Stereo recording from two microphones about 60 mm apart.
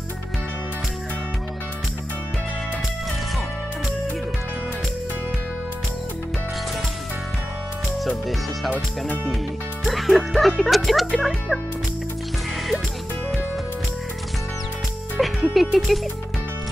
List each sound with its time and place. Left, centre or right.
8.7 s speech: left
9.8 s speech: centre
15.1 s music: centre